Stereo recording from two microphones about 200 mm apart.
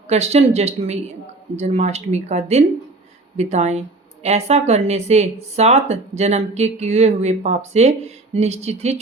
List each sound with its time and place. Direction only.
0.1 s speech: 30° right (ahead or behind)